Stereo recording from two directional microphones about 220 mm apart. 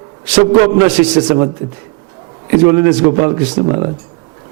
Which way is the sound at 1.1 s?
25° right (ahead or behind).